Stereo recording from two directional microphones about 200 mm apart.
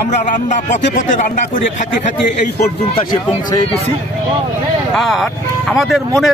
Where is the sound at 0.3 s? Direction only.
40° left (ahead or behind).